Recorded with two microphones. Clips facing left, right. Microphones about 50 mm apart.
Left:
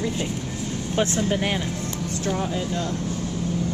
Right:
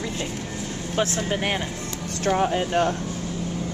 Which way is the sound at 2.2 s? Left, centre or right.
Right.